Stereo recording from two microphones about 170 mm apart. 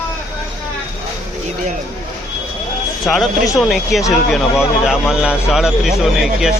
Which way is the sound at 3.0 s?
Centre (ahead or behind).